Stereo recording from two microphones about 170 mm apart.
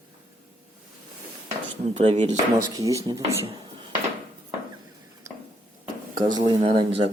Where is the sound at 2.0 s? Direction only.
35° right (ahead or behind).